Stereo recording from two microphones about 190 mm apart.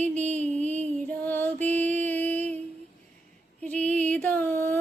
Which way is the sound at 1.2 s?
10° left (ahead or behind).